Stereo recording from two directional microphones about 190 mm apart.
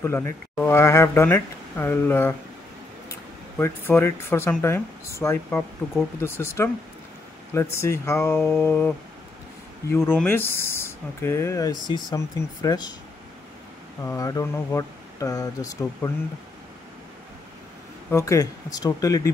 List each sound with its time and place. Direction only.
0.0 s speech: 10° left (ahead or behind)
5.8 s speech: centre (ahead or behind)
6.2 s speech: 10° left (ahead or behind)
7.7 s speech: 15° left (ahead or behind)
14.0 s speech: 15° left (ahead or behind)
18.1 s speech: 15° left (ahead or behind)